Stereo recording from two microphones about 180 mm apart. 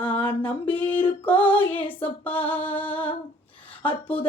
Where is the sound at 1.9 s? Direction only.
10° left (ahead or behind).